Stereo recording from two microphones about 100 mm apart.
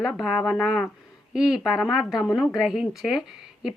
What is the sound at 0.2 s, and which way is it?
A woman's voice, centre (ahead or behind).